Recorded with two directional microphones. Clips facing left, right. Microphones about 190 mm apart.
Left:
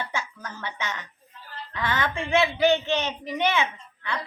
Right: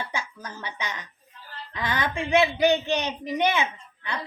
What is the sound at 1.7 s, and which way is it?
A woman's voice, 15° right (ahead or behind).